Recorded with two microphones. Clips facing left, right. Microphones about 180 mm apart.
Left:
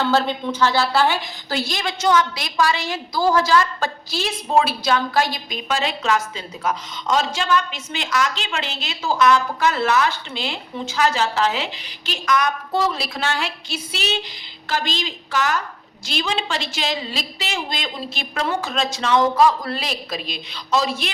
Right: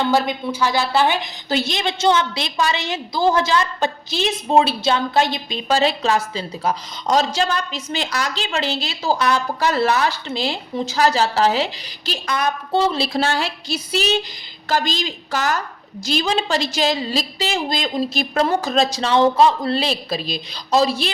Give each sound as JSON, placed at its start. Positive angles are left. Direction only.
{"t": 0.0, "sound": "a woman's voice", "side_deg": -15}